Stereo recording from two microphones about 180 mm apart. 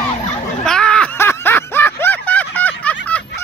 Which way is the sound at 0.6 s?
5° left (ahead or behind).